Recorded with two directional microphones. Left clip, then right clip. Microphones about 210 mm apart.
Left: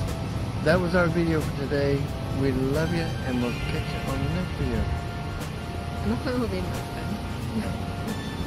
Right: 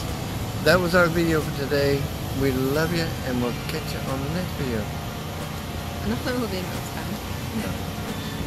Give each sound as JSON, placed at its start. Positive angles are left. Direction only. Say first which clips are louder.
{"t": 0.7, "sound": "speech", "louder": "right 4 dB", "side_deg": -15}